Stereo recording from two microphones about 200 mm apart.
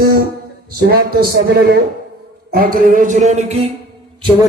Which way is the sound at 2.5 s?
45° right (ahead or behind).